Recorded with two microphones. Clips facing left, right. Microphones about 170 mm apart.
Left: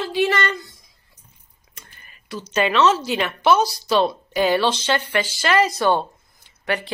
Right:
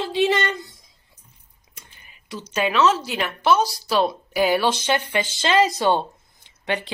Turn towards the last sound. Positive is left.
turn(degrees=-20)  # may be behind; listen again after turning